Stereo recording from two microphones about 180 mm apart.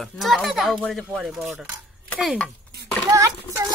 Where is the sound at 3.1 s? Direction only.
20° right (ahead or behind).